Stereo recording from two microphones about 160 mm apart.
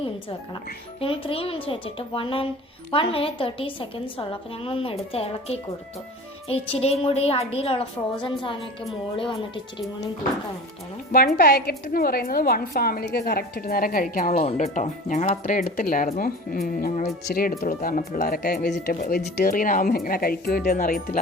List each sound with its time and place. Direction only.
0.0 s a woman's voice: 35° left (ahead or behind)
11.3 s a woman's voice: 75° left (ahead or behind); by 14.3 s 60° left (ahead or behind)
14.3 s a woman's voice: 45° left (ahead or behind); by 17.5 s 65° left (ahead or behind)
17.6 s speech: 45° left (ahead or behind)
17.8 s speech: 60° left (ahead or behind)